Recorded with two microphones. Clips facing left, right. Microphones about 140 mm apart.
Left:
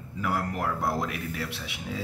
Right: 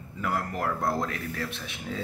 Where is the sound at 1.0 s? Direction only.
15° left (ahead or behind).